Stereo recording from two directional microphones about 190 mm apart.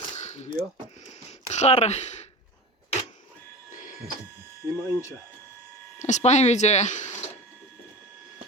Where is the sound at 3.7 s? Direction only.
45° left (ahead or behind).